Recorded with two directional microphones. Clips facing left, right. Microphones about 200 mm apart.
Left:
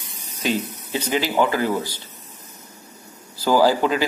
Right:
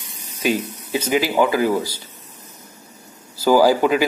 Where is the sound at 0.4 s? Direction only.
10° right (ahead or behind).